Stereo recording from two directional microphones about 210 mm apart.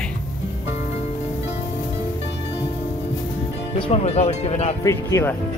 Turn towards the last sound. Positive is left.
turn(degrees=15)  # may be behind; listen again after turning